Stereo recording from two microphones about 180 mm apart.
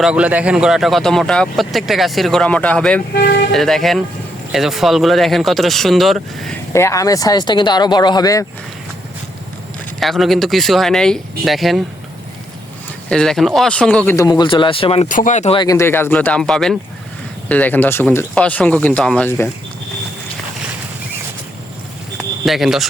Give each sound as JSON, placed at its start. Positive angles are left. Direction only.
{"t": 0.0, "sound": "speech", "side_deg": -5}
{"t": 3.2, "sound": "speech", "side_deg": 65}
{"t": 3.5, "sound": "speech", "side_deg": 0}
{"t": 6.7, "sound": "speech", "side_deg": 15}
{"t": 10.0, "sound": "speech", "side_deg": 0}
{"t": 13.1, "sound": "speech", "side_deg": 5}
{"t": 14.2, "sound": "speech", "side_deg": 20}
{"t": 15.0, "sound": "speech", "side_deg": 45}
{"t": 15.5, "sound": "speech", "side_deg": 20}
{"t": 22.4, "sound": "speech", "side_deg": 0}